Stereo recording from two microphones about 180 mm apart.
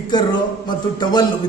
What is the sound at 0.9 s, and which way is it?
Speech, 25° left (ahead or behind).